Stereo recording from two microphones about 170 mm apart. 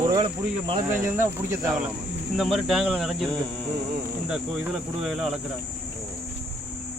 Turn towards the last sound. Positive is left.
turn(degrees=0)  # may be behind; listen again after turning